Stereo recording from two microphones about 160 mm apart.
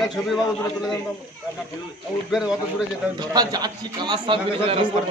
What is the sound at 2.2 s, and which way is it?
Speech, centre (ahead or behind).